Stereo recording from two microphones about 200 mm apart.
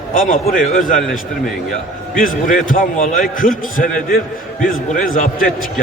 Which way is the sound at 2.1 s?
40° left (ahead or behind).